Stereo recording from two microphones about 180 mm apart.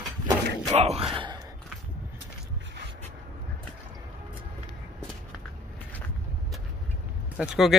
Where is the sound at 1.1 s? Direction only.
25° right (ahead or behind).